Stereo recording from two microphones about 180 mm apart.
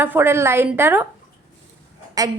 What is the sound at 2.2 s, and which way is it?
Speech, 20° right (ahead or behind).